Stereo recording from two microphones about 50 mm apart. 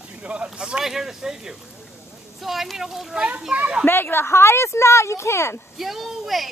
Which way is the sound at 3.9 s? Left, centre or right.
Left.